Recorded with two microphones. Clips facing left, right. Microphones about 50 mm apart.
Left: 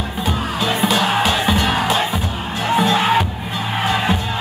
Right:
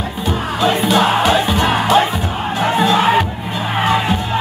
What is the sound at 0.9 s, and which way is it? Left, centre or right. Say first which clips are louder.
Music: right 5 dB; right.